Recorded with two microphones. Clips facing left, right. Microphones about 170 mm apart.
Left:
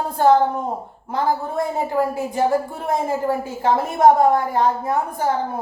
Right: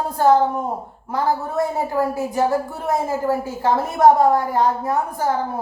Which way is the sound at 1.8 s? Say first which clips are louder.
Even; 20° left (ahead or behind).